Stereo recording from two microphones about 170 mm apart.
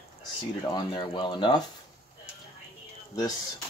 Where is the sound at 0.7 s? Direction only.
25° left (ahead or behind).